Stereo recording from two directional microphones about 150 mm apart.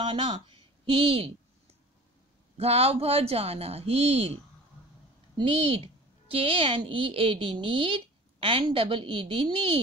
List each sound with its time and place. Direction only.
0.0 s a woman's voice: 35° right (ahead or behind)
2.5 s a woman's voice: 40° right (ahead or behind)
5.4 s a woman's voice: 40° right (ahead or behind)